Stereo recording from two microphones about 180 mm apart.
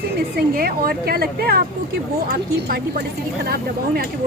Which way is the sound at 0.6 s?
55° right (ahead or behind).